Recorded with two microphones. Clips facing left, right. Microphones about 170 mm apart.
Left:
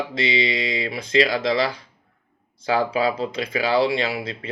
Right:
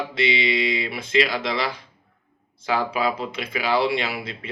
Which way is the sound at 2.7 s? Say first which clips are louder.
Left 2 dB; 35° left (ahead or behind).